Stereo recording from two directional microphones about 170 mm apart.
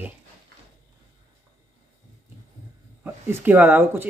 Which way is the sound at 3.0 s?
10° right (ahead or behind).